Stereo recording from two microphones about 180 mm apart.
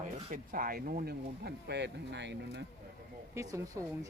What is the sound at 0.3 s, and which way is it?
Speech, 50° right (ahead or behind).